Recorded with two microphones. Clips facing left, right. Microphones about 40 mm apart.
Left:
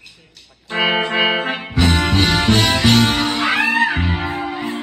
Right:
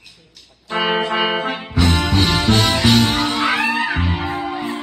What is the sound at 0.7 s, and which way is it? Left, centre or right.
Music, left.